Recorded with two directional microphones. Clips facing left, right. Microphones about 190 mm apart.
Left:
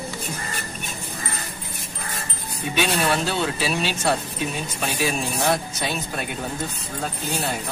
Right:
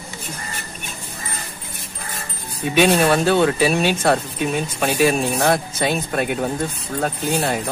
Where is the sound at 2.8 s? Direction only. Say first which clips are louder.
Right 7 dB; 55° right (ahead or behind).